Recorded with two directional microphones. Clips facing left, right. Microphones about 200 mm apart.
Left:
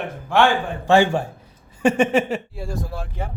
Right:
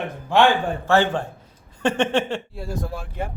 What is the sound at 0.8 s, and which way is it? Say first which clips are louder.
Speech: left 4 dB; 15° left (ahead or behind).